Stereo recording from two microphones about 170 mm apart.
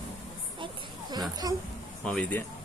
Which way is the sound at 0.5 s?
30° right (ahead or behind).